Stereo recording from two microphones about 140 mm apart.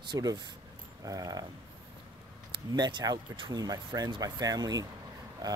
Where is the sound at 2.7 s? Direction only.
30° right (ahead or behind).